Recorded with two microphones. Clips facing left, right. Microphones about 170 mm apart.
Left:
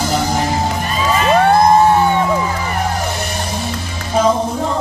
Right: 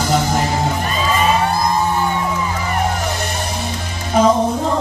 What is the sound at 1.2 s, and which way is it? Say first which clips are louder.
Music: left 6 dB; 65° left (ahead or behind).